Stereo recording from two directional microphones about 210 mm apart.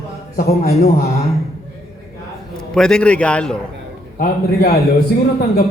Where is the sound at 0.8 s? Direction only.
45° left (ahead or behind).